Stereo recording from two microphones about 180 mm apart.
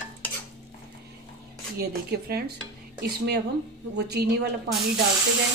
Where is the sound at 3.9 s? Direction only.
65° right (ahead or behind).